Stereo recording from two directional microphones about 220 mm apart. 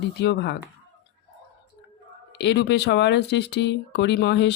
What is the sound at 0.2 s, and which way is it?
Speech, 50° left (ahead or behind).